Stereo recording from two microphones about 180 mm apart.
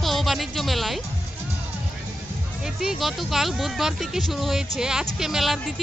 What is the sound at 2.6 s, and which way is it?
Speech, 5° right (ahead or behind).